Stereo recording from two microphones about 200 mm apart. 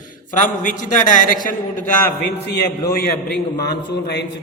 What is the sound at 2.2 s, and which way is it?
A man's voice, 55° left (ahead or behind).